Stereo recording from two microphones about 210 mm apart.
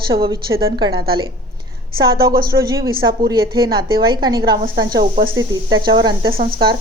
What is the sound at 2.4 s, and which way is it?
A woman's voice, 20° right (ahead or behind).